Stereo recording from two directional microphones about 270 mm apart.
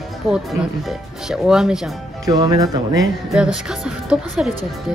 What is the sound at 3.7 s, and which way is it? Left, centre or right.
Speech, centre.